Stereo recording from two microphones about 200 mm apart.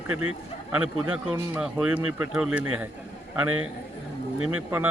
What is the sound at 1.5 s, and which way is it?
Speech, 5° right (ahead or behind).